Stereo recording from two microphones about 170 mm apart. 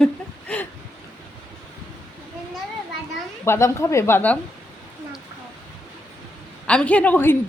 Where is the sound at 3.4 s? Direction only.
15° left (ahead or behind).